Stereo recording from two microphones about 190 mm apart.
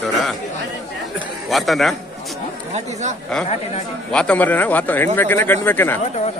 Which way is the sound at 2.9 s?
40° right (ahead or behind).